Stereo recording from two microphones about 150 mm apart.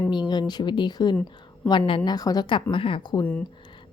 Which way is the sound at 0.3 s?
30° left (ahead or behind).